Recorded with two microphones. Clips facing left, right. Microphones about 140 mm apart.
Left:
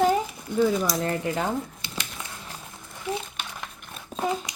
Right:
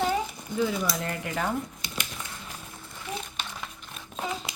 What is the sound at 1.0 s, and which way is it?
Speech, 30° left (ahead or behind).